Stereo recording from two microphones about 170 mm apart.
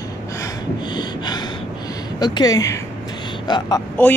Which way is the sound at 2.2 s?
25° left (ahead or behind).